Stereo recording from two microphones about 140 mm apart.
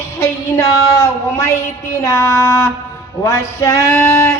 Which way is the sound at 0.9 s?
20° left (ahead or behind).